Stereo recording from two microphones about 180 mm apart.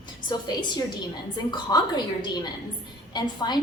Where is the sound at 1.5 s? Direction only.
20° left (ahead or behind).